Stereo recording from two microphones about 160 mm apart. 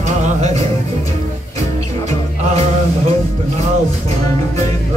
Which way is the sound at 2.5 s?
40° right (ahead or behind).